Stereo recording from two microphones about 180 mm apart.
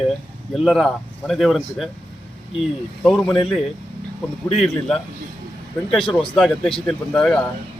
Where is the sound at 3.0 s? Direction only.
5° left (ahead or behind).